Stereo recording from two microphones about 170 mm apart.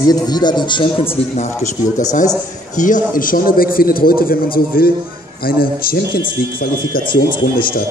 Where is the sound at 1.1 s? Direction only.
40° left (ahead or behind).